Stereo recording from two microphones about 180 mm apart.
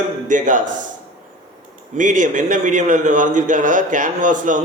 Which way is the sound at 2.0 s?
45° right (ahead or behind).